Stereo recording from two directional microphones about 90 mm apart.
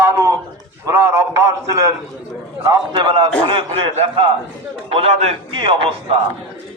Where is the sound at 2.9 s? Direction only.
60° right (ahead or behind).